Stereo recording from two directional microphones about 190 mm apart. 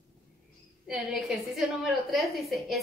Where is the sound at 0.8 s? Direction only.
5° right (ahead or behind).